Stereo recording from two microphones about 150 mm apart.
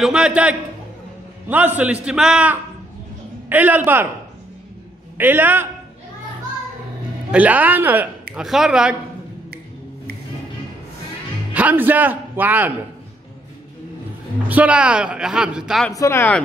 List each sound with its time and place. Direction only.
0.0 s a man's voice: 5° right (ahead or behind)
5.1 s a man's voice: 15° right (ahead or behind)
7.2 s a man's voice: 10° right (ahead or behind)
11.5 s a man's voice: 10° right (ahead or behind)
14.5 s speech: 10° right (ahead or behind)
15.9 s speech: 20° left (ahead or behind)